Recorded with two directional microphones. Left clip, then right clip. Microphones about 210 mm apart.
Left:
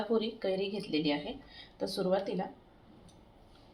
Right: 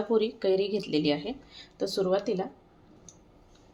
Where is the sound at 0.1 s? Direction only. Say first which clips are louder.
Right 8 dB; 35° right (ahead or behind).